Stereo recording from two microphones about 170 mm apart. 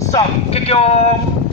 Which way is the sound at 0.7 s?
35° left (ahead or behind).